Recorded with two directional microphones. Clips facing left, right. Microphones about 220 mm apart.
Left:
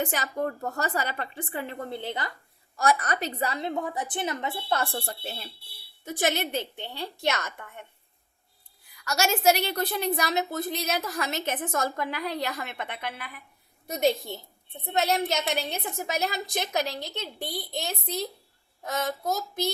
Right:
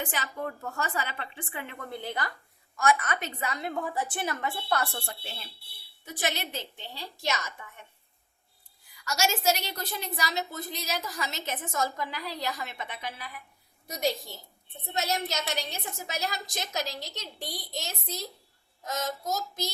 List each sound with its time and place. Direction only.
0.0 s a woman's voice: 40° left (ahead or behind); by 2.3 s 25° left (ahead or behind)
2.7 s a woman's voice: 35° left (ahead or behind); by 7.9 s 60° left (ahead or behind)
9.0 s a woman's voice: 60° left (ahead or behind)